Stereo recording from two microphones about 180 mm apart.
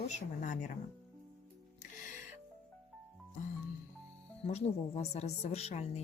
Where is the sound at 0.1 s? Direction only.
45° left (ahead or behind).